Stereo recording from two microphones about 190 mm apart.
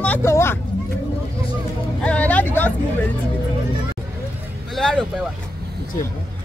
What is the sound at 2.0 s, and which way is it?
Music, 5° left (ahead or behind).